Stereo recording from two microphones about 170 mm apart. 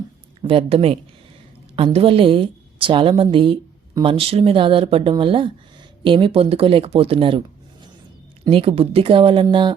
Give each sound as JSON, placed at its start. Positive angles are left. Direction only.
{"t": 0.4, "sound": "a woman's voice", "side_deg": -35}
{"t": 8.4, "sound": "a woman's voice", "side_deg": -35}